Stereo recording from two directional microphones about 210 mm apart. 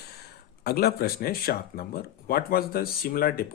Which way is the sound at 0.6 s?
50° left (ahead or behind).